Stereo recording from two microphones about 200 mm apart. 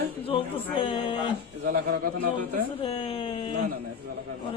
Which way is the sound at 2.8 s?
30° left (ahead or behind).